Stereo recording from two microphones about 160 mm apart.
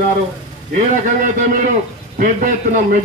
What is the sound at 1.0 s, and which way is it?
A man's voice, 55° right (ahead or behind).